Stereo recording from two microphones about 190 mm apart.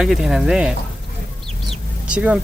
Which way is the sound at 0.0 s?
Centre (ahead or behind).